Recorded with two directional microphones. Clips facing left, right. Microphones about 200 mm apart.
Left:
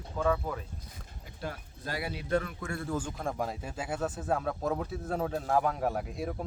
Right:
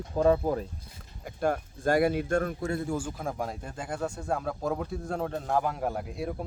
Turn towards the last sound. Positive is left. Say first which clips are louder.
# right 1 dB
turn(degrees=0)  # may be behind; listen again after turning